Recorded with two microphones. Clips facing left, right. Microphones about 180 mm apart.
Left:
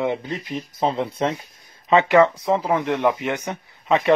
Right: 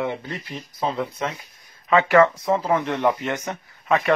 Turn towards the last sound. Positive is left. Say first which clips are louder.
# left 2 dB
turn(degrees=20)  # may be behind; listen again after turning